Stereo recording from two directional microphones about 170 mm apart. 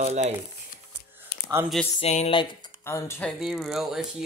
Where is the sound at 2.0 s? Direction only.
40° left (ahead or behind).